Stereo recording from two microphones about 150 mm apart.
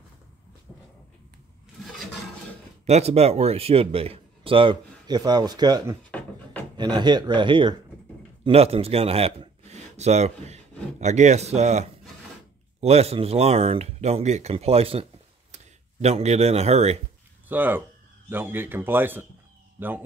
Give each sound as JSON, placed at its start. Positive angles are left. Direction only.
{"t": 2.9, "sound": "a man's voice", "side_deg": -45}
{"t": 17.5, "sound": "speech", "side_deg": -10}